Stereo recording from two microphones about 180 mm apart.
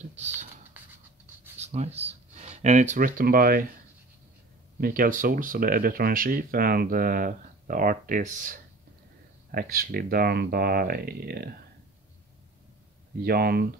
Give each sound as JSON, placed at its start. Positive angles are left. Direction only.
{"t": 0.0, "sound": "speech", "side_deg": -40}
{"t": 0.8, "sound": "a sound", "side_deg": -10}
{"t": 1.6, "sound": "speech", "side_deg": -35}
{"t": 4.7, "sound": "speech", "side_deg": -50}
{"t": 13.2, "sound": "speech", "side_deg": -55}